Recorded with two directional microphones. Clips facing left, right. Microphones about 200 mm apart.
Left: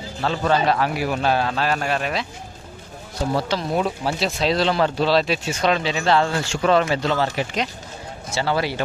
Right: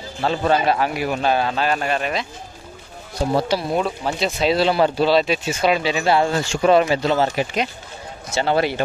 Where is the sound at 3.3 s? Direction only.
10° right (ahead or behind).